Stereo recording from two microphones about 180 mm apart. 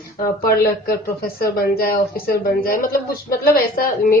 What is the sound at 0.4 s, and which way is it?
Speech, 55° left (ahead or behind).